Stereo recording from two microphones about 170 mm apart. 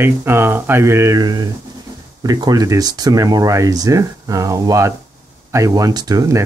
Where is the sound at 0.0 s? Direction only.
15° right (ahead or behind).